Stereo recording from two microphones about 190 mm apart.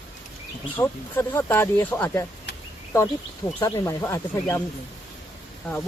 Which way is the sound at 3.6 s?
15° left (ahead or behind).